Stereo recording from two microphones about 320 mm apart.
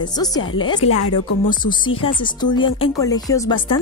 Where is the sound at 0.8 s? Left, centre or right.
Left.